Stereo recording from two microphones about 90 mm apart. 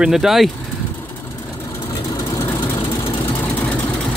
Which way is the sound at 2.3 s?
30° left (ahead or behind).